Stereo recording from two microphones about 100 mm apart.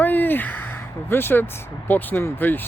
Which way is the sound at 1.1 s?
20° left (ahead or behind).